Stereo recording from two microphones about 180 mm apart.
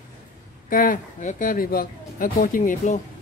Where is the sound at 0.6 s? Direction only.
50° left (ahead or behind).